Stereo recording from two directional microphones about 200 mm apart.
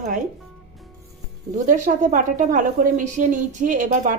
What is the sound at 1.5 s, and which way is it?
A woman's voice, 40° right (ahead or behind).